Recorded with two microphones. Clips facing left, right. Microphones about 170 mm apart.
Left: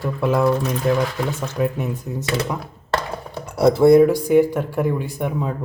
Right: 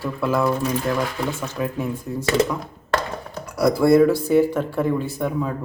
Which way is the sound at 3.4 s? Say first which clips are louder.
Left 4 dB; 25° left (ahead or behind).